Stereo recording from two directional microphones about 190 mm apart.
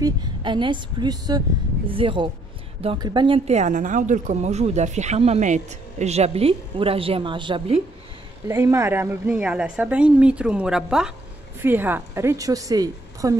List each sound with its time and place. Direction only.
0.0 s a woman's voice: 25° right (ahead or behind)
8.5 s a woman's voice: 15° right (ahead or behind)